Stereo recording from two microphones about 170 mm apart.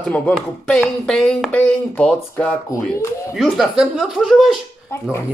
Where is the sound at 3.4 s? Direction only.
Centre (ahead or behind).